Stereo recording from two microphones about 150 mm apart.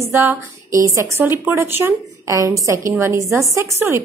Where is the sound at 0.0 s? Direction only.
15° right (ahead or behind).